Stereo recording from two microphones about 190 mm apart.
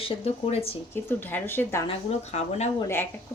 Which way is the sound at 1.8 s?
35° left (ahead or behind).